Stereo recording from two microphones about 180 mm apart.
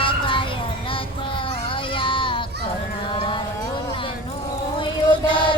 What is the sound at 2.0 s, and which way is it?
Children playing, 30° left (ahead or behind).